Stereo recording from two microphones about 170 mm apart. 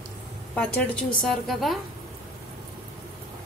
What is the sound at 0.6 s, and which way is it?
A woman's voice, 5° left (ahead or behind).